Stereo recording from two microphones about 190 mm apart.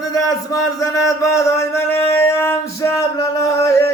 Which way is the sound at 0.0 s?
20° left (ahead or behind).